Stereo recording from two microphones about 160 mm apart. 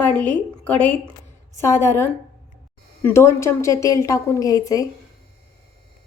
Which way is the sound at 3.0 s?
15° left (ahead or behind).